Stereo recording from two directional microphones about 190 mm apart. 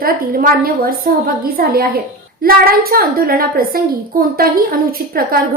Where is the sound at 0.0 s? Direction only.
50° right (ahead or behind).